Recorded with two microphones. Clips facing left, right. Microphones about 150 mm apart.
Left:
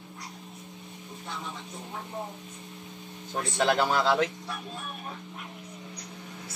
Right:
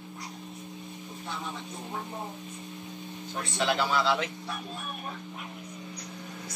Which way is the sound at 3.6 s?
45° left (ahead or behind).